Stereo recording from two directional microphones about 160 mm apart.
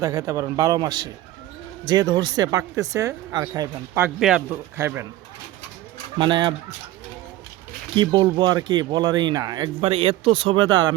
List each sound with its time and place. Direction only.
0.0 s speech: 20° right (ahead or behind)
4.0 s speech: 5° right (ahead or behind)
4.5 s speech: 15° right (ahead or behind)
6.1 s speech: 30° right (ahead or behind)
7.9 s speech: 30° right (ahead or behind)
9.8 s speech: 35° right (ahead or behind)